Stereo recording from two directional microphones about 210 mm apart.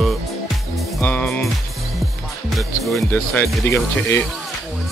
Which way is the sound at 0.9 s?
5° left (ahead or behind).